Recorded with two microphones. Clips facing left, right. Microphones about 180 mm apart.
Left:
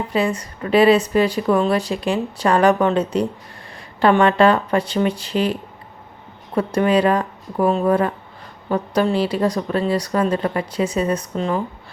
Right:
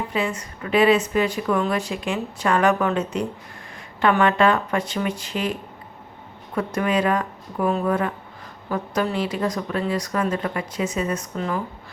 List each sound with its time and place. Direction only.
0.1 s a woman's voice: 35° left (ahead or behind)